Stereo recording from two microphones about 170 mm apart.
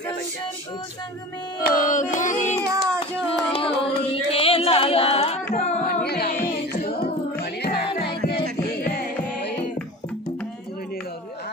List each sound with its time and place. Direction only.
1.6 s a sound: 50° left (ahead or behind)
2.7 s music: 20° right (ahead or behind)
3.3 s singing: 30° left (ahead or behind)
5.5 s carnatic music: 40° left (ahead or behind)
5.9 s music: 65° left (ahead or behind)
6.8 s singing: 65° left (ahead or behind)
7.6 s music: 75° left (ahead or behind)
8.6 s music: 65° left (ahead or behind)